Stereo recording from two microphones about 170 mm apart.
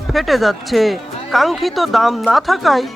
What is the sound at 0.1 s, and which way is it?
Speech, centre (ahead or behind).